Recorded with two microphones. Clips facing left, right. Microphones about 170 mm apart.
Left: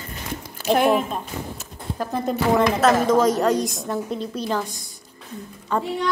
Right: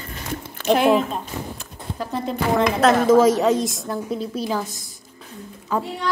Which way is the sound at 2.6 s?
Centre (ahead or behind).